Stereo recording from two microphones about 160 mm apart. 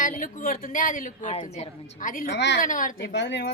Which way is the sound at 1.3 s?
40° left (ahead or behind).